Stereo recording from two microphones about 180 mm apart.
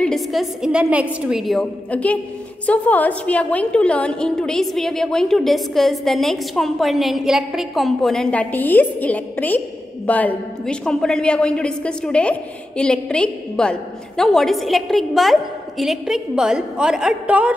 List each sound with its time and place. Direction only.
0.0 s a woman's voice: centre (ahead or behind)